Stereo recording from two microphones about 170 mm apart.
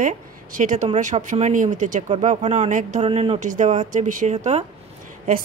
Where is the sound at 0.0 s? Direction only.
50° right (ahead or behind).